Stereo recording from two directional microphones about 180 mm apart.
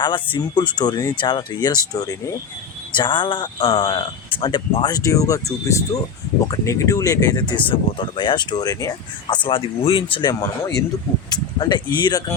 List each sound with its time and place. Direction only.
0.0 s speech: 25° left (ahead or behind)